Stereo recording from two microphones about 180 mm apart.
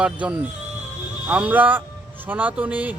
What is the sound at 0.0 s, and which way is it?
Speech, 5° right (ahead or behind).